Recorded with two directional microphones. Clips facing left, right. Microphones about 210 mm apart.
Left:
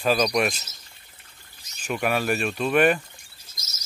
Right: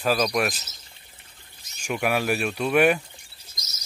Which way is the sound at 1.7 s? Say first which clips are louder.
Even; 10° right (ahead or behind).